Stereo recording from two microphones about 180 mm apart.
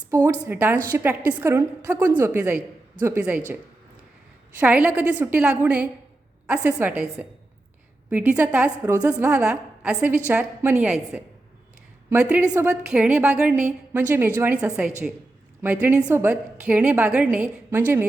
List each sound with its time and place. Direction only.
0.1 s a woman's voice: 15° right (ahead or behind)
4.6 s a woman's voice: 10° right (ahead or behind)
12.5 s a woman's voice: 10° right (ahead or behind)